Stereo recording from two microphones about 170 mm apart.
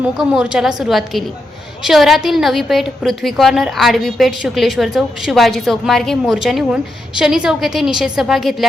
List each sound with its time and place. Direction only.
0.0 s a woman's voice: 5° right (ahead or behind)